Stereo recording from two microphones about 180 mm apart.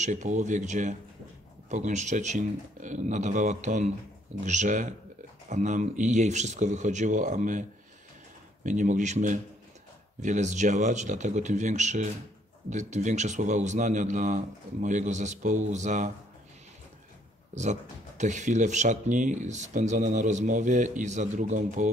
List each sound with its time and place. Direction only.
0.0 s speech: 40° right (ahead or behind)
8.6 s speech: 45° right (ahead or behind)
17.6 s speech: 40° right (ahead or behind)